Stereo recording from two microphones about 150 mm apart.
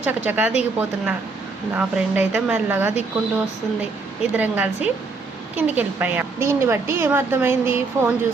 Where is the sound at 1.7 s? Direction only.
10° right (ahead or behind).